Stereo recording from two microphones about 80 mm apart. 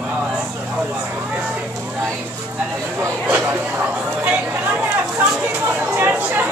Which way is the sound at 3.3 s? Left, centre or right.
Right.